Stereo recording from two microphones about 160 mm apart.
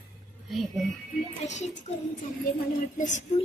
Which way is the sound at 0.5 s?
Centre (ahead or behind).